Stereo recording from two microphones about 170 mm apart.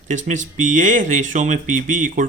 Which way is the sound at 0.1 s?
45° right (ahead or behind).